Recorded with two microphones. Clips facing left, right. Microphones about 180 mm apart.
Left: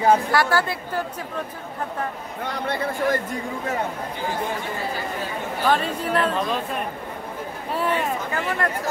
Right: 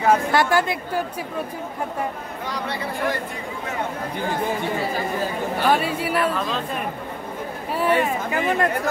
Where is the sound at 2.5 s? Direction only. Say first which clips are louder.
Left 2 dB; 50° left (ahead or behind).